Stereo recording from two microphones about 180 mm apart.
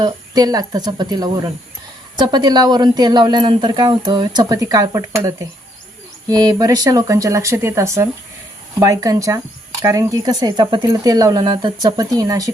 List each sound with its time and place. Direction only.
0.0 s speech: 20° right (ahead or behind)